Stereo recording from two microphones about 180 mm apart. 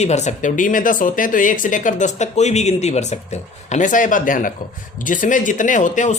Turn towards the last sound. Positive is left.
turn(degrees=45)  # may be behind; listen again after turning